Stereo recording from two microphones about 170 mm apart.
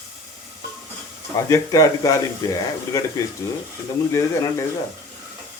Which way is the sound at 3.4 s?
15° left (ahead or behind).